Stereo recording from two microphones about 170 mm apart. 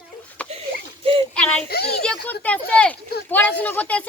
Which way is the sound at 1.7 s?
70° left (ahead or behind).